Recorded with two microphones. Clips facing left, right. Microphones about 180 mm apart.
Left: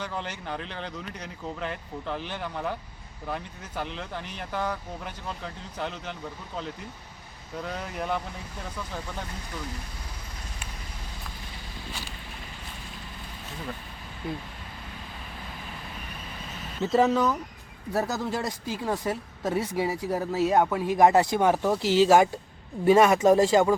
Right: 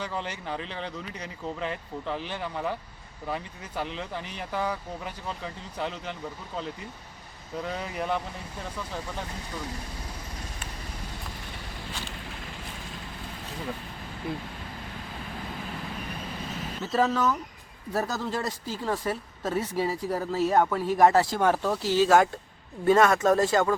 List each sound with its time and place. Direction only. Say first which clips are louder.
0.0 s speech: right 1 dB; centre (ahead or behind)
7.6 s speech: right 1 dB; 5° right (ahead or behind)
16.8 s speech: left 3 dB; 20° left (ahead or behind)